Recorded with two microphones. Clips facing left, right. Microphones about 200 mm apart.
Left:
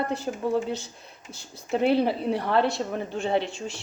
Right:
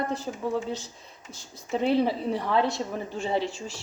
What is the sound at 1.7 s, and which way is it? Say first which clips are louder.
Speech: left 2 dB; 70° left (ahead or behind).